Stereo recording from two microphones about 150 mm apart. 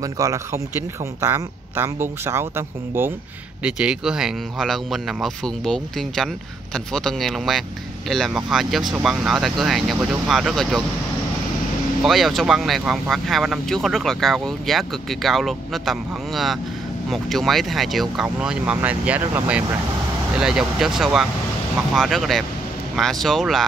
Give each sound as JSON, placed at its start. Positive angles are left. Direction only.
{"t": 0.0, "sound": "speech", "side_deg": -20}
{"t": 3.6, "sound": "speech", "side_deg": -5}
{"t": 12.0, "sound": "speech", "side_deg": 0}